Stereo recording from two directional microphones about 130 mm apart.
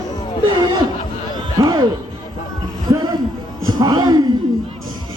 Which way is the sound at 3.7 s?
30° right (ahead or behind).